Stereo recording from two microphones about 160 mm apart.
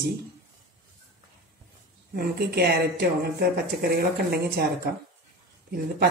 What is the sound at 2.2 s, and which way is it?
Speech, 80° right.